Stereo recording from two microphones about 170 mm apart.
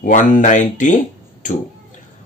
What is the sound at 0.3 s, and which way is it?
Speech, 50° left (ahead or behind).